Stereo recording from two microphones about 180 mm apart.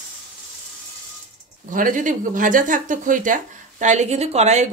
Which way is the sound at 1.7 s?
45° right (ahead or behind).